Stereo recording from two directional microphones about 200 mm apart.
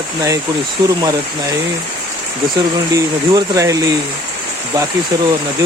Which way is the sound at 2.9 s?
15° right (ahead or behind).